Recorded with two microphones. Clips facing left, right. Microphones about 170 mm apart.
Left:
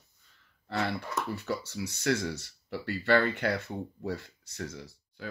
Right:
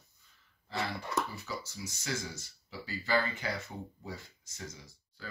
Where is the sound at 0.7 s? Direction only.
65° left (ahead or behind).